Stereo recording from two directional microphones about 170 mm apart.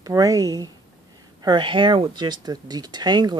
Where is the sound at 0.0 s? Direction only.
20° right (ahead or behind).